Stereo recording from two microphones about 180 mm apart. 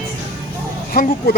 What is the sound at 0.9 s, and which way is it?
Speech, 55° left (ahead or behind).